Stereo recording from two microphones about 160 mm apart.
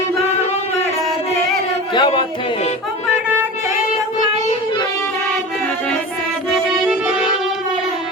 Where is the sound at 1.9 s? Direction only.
30° left (ahead or behind).